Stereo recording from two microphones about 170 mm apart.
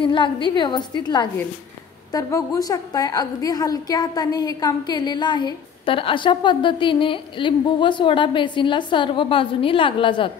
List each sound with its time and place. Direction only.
0.0 s a woman's voice: 30° left (ahead or behind)